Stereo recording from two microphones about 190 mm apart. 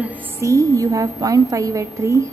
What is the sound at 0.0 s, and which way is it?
A woman's voice, 15° right (ahead or behind).